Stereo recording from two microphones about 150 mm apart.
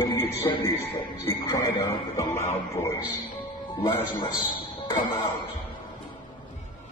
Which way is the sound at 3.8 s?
35° left (ahead or behind).